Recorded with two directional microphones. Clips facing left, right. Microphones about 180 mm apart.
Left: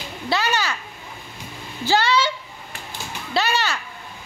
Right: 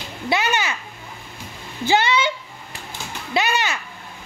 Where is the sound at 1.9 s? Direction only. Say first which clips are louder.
Right 1 dB; 20° right (ahead or behind).